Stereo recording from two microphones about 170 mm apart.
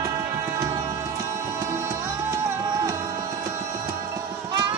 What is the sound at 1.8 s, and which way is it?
Music, 15° right (ahead or behind).